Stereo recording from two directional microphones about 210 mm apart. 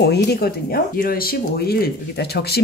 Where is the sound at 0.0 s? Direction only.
50° left (ahead or behind).